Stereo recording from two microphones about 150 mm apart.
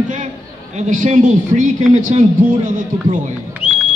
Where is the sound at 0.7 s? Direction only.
55° right (ahead or behind).